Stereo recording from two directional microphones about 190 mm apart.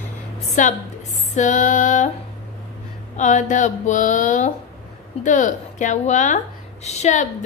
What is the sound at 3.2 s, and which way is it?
A woman's voice, 40° left (ahead or behind).